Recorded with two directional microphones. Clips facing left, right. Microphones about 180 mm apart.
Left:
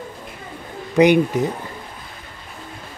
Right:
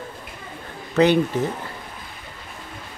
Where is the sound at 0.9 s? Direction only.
15° left (ahead or behind).